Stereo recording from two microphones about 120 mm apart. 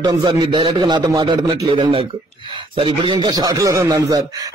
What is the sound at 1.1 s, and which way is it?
Speech, 30° right (ahead or behind).